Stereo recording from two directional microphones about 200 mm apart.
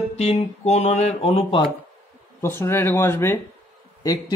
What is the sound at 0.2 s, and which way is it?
Speech, 30° left (ahead or behind).